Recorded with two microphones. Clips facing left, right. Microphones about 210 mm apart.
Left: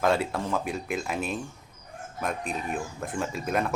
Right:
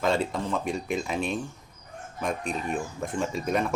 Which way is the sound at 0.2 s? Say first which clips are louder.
Even; 5° left (ahead or behind).